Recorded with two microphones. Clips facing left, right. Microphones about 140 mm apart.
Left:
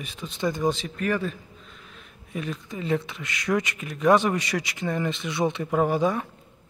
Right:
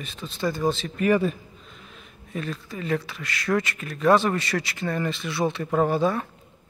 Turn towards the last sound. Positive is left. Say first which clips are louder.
# right 1 dB
turn(degrees=15)  # may be behind; listen again after turning